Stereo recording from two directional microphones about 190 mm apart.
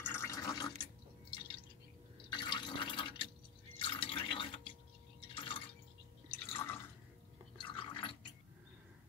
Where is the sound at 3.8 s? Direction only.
30° left (ahead or behind).